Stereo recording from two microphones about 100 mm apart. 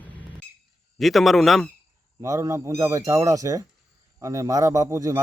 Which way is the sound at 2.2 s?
30° right (ahead or behind).